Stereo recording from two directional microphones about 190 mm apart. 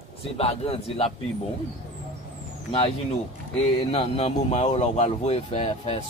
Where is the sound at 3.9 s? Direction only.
30° left (ahead or behind).